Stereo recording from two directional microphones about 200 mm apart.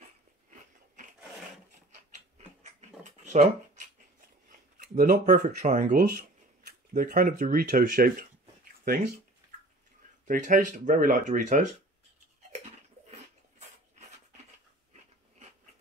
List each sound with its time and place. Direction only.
2.3 s dog: 35° right (ahead or behind)
4.7 s speech: 45° right (ahead or behind)
10.2 s speech: 40° right (ahead or behind)